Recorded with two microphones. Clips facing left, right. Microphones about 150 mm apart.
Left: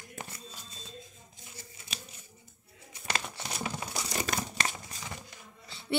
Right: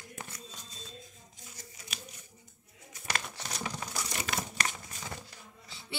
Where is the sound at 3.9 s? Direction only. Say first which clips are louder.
Left 3 dB; 35° left (ahead or behind).